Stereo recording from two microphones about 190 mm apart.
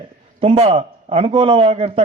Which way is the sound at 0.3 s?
30° right (ahead or behind).